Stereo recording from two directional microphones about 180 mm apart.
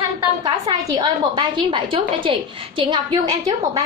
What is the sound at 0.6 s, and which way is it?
A woman's voice, 25° right (ahead or behind).